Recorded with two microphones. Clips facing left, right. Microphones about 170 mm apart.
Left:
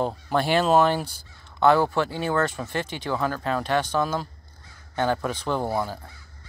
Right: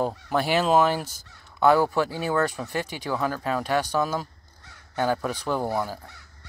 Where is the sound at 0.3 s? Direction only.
5° right (ahead or behind).